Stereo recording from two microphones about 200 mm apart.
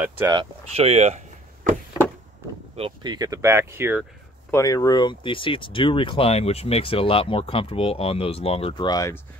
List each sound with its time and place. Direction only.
0.3 s speech: 30° right (ahead or behind)
2.7 s speech: 25° right (ahead or behind)
4.5 s speech: 15° left (ahead or behind)